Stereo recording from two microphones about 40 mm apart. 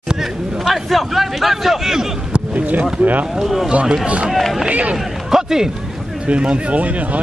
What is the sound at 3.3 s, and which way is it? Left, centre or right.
Speech, centre.